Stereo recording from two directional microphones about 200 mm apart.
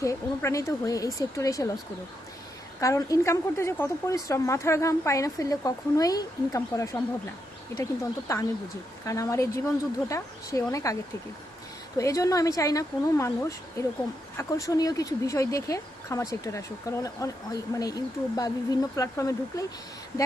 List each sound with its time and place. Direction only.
0.0 s speech: 15° left (ahead or behind)
2.8 s speech: 15° left (ahead or behind)
8.3 s speech: 15° left (ahead or behind)
11.9 s speech: 15° left (ahead or behind)